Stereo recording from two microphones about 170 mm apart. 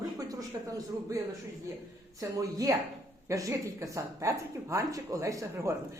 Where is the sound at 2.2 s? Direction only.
20° right (ahead or behind).